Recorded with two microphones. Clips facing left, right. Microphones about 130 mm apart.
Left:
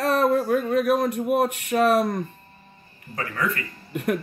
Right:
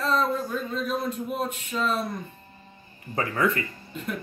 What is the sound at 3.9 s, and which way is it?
Speech, 65° left (ahead or behind).